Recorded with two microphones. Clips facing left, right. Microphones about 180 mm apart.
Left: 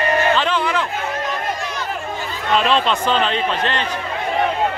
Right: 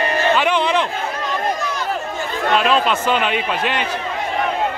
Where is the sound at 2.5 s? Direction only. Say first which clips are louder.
Even; 5° right (ahead or behind).